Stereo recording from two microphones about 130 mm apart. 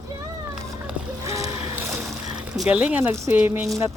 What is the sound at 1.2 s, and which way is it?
Boat, 25° right (ahead or behind).